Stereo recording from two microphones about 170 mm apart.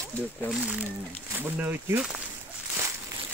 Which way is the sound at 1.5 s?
10° right (ahead or behind).